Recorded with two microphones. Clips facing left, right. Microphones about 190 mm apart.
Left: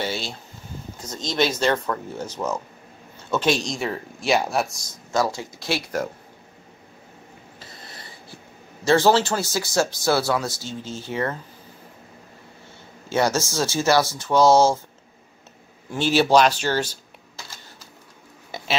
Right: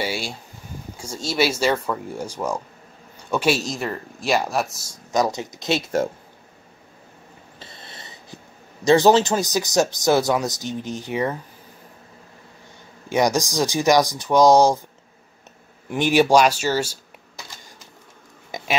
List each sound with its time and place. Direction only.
0.0 s speech: 10° right (ahead or behind)
5.1 s speech: 20° right (ahead or behind)
7.5 s a sound: 25° right (ahead or behind)
8.8 s speech: 15° right (ahead or behind)
13.1 s speech: 15° right (ahead or behind)
15.9 s speech: 15° right (ahead or behind)